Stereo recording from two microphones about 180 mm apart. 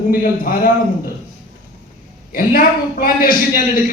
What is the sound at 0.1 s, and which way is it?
A man's voice, 55° left (ahead or behind).